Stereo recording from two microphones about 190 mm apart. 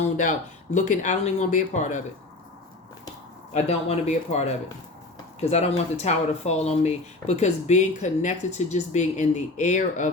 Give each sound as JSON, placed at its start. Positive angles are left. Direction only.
{"t": 0.0, "sound": "speech", "side_deg": 40}
{"t": 3.5, "sound": "speech", "side_deg": 35}